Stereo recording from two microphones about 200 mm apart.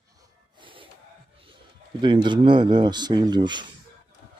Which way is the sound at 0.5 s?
25° right (ahead or behind).